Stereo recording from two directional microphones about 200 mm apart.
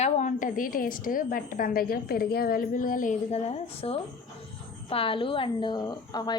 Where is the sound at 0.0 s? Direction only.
35° left (ahead or behind).